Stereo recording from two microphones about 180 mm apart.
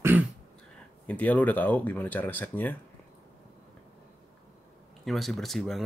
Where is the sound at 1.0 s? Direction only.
10° left (ahead or behind).